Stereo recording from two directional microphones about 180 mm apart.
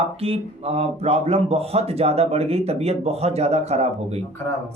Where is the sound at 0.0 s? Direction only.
35° right (ahead or behind).